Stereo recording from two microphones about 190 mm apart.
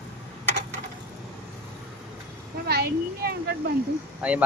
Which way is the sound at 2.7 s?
55° right (ahead or behind).